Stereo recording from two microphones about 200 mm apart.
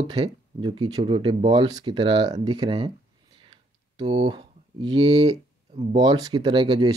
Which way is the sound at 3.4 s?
20° right (ahead or behind).